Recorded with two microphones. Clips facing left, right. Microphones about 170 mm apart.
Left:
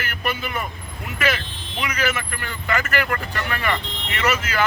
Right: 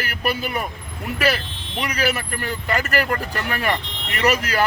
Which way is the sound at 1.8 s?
35° right (ahead or behind).